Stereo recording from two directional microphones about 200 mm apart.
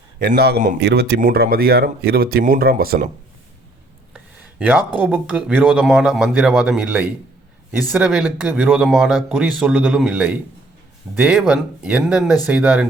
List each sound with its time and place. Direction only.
0.2 s speech: 50° right (ahead or behind)
4.1 s speech: 5° right (ahead or behind)
11.3 s speech: 5° right (ahead or behind)